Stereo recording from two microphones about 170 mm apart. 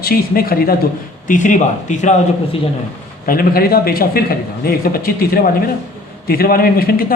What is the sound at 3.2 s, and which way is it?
Speech, 60° left (ahead or behind).